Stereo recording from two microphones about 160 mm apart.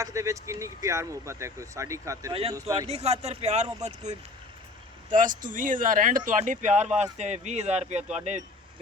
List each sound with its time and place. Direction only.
0.0 s speech: 20° right (ahead or behind)
2.9 s speech: 40° right (ahead or behind)